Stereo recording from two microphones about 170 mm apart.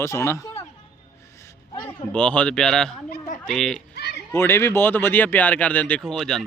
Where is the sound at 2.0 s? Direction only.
5° left (ahead or behind).